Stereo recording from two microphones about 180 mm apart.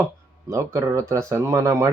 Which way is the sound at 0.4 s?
15° right (ahead or behind).